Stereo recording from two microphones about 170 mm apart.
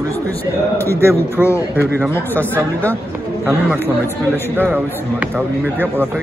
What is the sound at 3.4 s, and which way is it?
Speech, 10° right (ahead or behind).